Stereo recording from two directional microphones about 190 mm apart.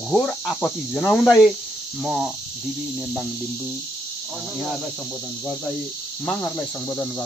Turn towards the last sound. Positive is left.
turn(degrees=15)  # may be behind; listen again after turning